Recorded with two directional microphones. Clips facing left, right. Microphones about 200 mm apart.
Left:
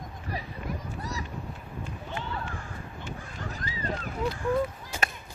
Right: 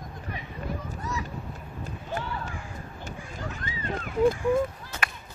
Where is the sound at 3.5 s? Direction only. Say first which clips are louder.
Left 1 dB; 35° left (ahead or behind).